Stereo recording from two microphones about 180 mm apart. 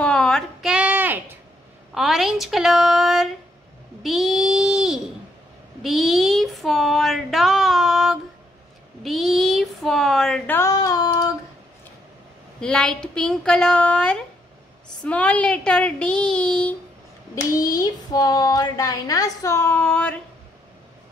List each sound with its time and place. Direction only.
0.0 s a sound: 5° left (ahead or behind)
2.0 s speech: centre (ahead or behind)
4.0 s babbling: centre (ahead or behind)
5.8 s child singing: centre (ahead or behind)
9.0 s a sound: centre (ahead or behind); by 11.2 s 20° left (ahead or behind)
12.5 s speech: 5° left (ahead or behind)
17.5 s speech: 20° left (ahead or behind)